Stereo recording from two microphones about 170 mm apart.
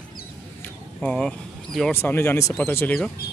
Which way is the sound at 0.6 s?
5° left (ahead or behind).